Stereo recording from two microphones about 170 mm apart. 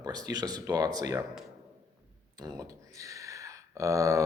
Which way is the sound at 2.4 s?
20° right (ahead or behind).